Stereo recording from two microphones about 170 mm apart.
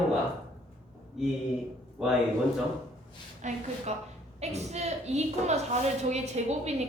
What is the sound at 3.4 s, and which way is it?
A woman's voice, 45° right (ahead or behind).